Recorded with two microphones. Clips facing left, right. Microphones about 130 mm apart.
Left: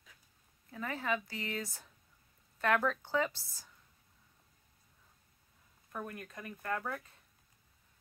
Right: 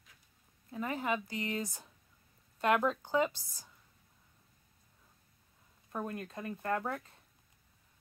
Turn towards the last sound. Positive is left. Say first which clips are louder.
# right 3 dB
turn(degrees=-25)  # may be behind; listen again after turning